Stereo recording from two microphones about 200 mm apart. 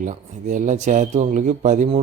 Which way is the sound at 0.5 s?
40° right (ahead or behind).